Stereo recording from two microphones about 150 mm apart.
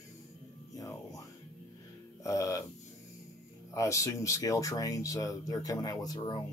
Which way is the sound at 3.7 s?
20° left (ahead or behind).